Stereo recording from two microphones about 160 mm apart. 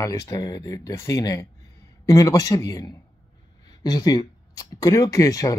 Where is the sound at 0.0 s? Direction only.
20° left (ahead or behind).